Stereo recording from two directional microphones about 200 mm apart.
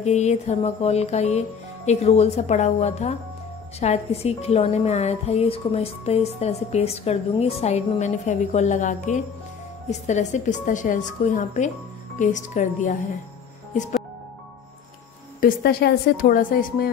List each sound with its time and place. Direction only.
0.0 s a woman's voice: 35° left (ahead or behind)
15.4 s a woman's voice: 50° left (ahead or behind)